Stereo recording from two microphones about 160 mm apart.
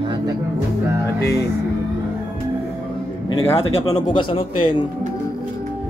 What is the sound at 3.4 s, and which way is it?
Speech, 25° left (ahead or behind).